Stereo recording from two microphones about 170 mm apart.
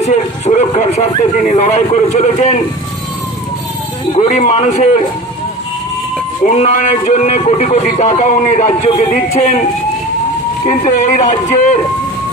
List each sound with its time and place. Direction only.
0.0 s speech: 45° left (ahead or behind)
4.1 s speech: 40° left (ahead or behind)
6.4 s speech: 50° left (ahead or behind)
10.6 s speech: 45° left (ahead or behind)